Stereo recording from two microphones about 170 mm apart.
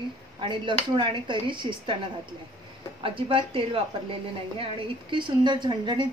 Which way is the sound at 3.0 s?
30° right (ahead or behind).